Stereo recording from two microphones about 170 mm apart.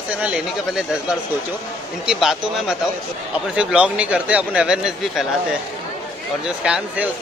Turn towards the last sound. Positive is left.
turn(degrees=-5)  # may be behind; listen again after turning